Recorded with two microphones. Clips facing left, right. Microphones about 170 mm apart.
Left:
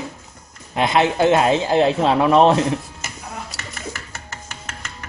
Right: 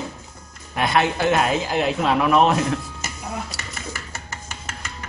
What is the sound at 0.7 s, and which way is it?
A man's voice, 20° left (ahead or behind).